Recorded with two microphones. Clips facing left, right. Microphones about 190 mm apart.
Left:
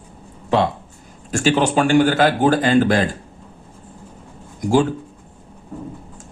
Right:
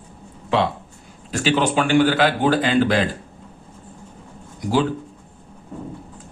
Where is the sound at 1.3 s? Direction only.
45° left (ahead or behind).